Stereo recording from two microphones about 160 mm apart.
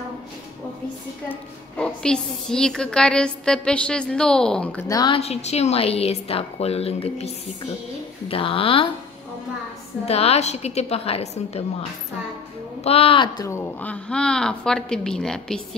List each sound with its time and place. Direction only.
1.3 s a woman's voice: 5° left (ahead or behind)
4.8 s speech: 20° left (ahead or behind)
5.1 s a woman's voice: 40° left (ahead or behind)
10.0 s a woman's voice: 40° left (ahead or behind)
12.8 s a woman's voice: 35° left (ahead or behind)
13.5 s a woman's voice: 10° left (ahead or behind)